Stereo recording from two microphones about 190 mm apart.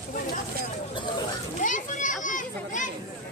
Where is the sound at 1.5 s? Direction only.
40° left (ahead or behind).